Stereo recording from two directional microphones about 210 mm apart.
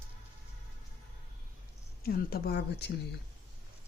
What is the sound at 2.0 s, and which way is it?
Speech, 45° left (ahead or behind).